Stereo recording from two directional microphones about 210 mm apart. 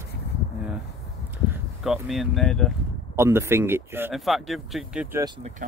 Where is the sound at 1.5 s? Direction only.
Centre (ahead or behind).